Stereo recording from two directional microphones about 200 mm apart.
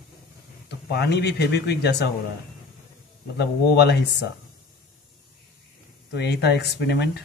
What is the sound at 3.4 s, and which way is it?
Speech, 55° left (ahead or behind).